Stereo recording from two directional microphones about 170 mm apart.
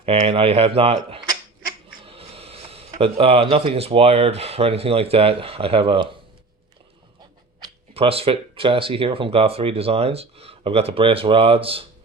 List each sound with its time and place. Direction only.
0.0 s speech: 35° right (ahead or behind)
7.6 s speech: 35° right (ahead or behind)